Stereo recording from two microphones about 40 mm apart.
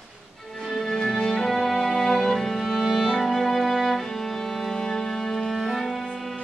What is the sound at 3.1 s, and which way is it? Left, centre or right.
Music, centre.